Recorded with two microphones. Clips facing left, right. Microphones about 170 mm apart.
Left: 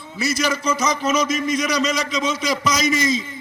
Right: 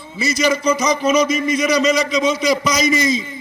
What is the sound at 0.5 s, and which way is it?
A man's voice, 15° right (ahead or behind).